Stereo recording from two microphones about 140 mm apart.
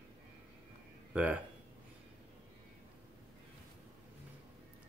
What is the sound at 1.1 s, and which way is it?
Speech, 10° right (ahead or behind).